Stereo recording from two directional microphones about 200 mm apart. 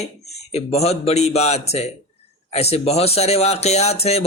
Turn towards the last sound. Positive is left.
turn(degrees=30)  # may be behind; listen again after turning